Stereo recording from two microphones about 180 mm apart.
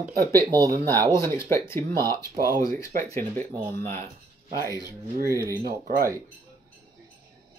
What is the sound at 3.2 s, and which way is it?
Speech, 35° right (ahead or behind).